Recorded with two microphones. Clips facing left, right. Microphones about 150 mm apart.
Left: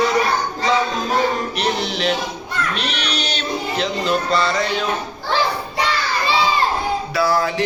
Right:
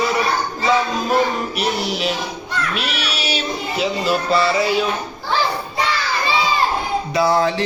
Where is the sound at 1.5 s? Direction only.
5° right (ahead or behind).